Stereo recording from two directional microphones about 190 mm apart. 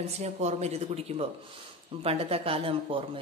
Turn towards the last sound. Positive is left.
turn(degrees=-30)  # may be behind; listen again after turning